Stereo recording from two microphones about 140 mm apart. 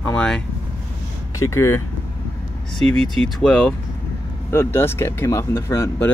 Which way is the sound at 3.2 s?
5° left (ahead or behind).